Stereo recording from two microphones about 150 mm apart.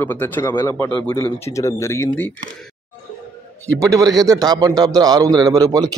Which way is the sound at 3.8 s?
25° right (ahead or behind).